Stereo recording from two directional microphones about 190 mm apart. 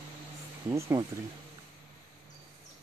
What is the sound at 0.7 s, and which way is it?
Speech, 15° right (ahead or behind).